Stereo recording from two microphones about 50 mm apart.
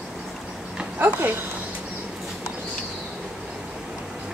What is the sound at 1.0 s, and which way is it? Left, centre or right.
Speech, right.